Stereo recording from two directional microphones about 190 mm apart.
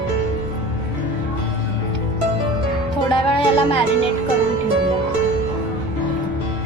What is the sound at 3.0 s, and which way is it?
Music, 25° left (ahead or behind).